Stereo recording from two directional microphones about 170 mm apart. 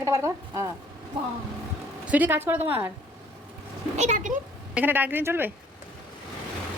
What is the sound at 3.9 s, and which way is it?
Speech, 45° right (ahead or behind).